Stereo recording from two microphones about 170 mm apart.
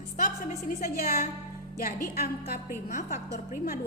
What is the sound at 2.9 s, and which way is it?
Speech, 50° left (ahead or behind).